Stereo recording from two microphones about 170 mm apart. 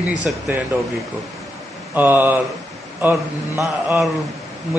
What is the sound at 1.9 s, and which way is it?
A man's voice, 10° right (ahead or behind).